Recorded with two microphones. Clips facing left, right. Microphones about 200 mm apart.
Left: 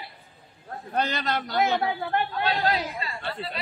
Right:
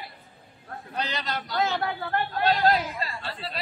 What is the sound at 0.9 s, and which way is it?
Speech, 50° left (ahead or behind).